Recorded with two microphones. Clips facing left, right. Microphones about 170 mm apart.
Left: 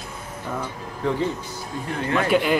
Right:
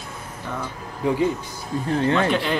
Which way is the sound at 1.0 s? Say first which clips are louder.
Right 2 dB; 15° right (ahead or behind).